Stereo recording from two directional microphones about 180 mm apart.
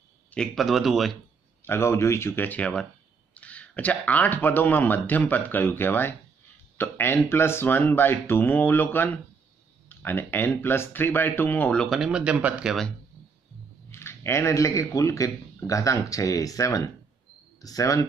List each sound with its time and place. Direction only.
0.3 s speech: centre (ahead or behind)
1.6 s speech: 15° left (ahead or behind)
13.8 s speech: 15° left (ahead or behind)